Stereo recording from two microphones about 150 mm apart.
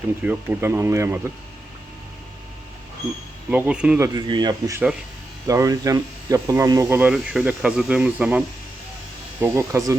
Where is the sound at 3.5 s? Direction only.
10° right (ahead or behind).